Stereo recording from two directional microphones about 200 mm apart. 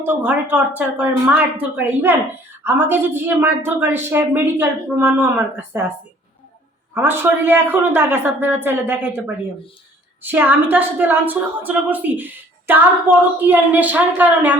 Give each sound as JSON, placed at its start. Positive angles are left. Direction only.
{"t": 0.0, "sound": "a woman's voice", "side_deg": -10}
{"t": 6.9, "sound": "a woman's voice", "side_deg": -10}